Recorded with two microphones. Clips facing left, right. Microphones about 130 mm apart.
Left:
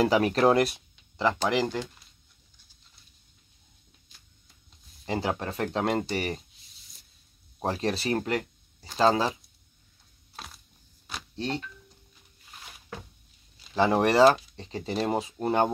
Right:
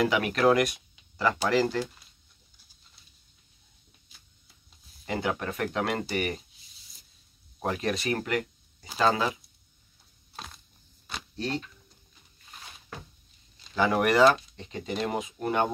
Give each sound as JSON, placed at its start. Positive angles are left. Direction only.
{"t": 0.0, "sound": "speech", "side_deg": 35}
{"t": 1.5, "sound": "speech", "side_deg": 15}
{"t": 5.0, "sound": "speech", "side_deg": 30}
{"t": 7.6, "sound": "speech", "side_deg": 30}
{"t": 10.3, "sound": "a sound", "side_deg": 0}
{"t": 11.3, "sound": "speech", "side_deg": 25}
{"t": 13.7, "sound": "speech", "side_deg": 25}